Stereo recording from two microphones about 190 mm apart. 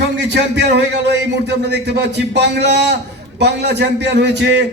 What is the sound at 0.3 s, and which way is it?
A man's voice, 65° right (ahead or behind).